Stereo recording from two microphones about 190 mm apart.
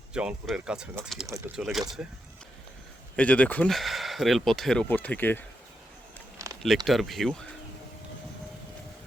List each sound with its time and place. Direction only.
0.1 s speech: 5° right (ahead or behind)
3.2 s speech: 5° left (ahead or behind)
6.8 s speech: centre (ahead or behind)